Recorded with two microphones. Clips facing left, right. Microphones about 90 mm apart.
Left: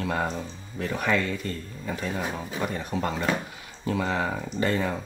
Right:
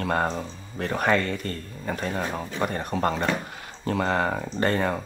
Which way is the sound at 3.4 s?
55° right (ahead or behind).